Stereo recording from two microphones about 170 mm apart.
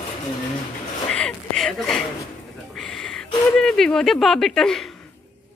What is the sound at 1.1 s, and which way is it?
Speech, 5° left (ahead or behind).